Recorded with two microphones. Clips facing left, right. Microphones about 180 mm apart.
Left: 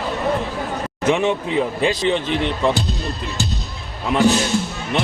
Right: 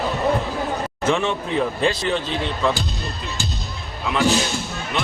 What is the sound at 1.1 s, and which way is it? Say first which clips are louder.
Speech: left 3 dB; 15° left (ahead or behind).